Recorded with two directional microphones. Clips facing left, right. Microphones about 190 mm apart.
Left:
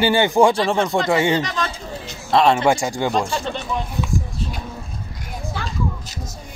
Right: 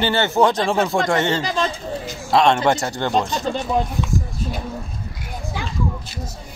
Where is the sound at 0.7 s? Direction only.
Centre (ahead or behind).